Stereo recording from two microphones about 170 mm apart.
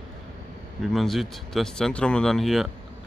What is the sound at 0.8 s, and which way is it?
Speech, centre (ahead or behind).